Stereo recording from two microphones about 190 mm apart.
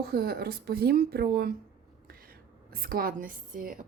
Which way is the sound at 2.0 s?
50° right (ahead or behind).